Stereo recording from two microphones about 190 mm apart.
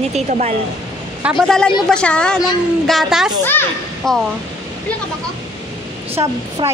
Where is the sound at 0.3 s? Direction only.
35° right (ahead or behind).